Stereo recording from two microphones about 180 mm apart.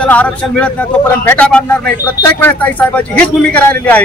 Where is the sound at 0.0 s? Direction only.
5° left (ahead or behind).